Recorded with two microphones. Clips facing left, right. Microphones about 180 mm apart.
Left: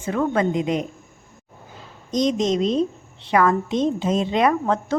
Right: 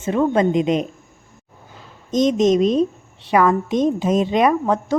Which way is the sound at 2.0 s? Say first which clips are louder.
Right 5 dB; 20° right (ahead or behind).